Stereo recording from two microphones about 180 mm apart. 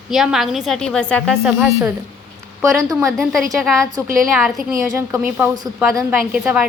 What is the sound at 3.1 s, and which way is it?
A woman's voice, centre (ahead or behind).